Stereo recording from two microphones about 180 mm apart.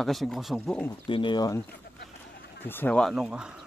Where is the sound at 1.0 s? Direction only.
25° left (ahead or behind).